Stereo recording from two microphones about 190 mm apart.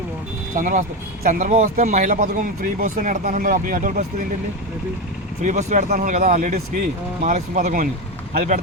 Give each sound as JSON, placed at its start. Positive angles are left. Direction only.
{"t": 0.5, "sound": "speech", "side_deg": -45}
{"t": 5.4, "sound": "speech", "side_deg": -35}